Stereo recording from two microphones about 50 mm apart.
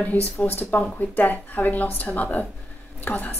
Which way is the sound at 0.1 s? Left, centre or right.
Left.